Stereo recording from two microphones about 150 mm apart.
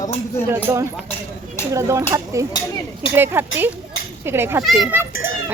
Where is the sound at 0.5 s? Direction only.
20° right (ahead or behind).